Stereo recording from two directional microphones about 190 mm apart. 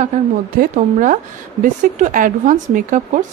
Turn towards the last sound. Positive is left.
turn(degrees=-40)  # may be behind; listen again after turning